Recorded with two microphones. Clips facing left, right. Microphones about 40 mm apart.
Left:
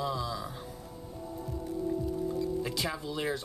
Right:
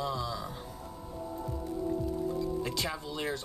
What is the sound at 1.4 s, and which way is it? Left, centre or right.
Music, centre.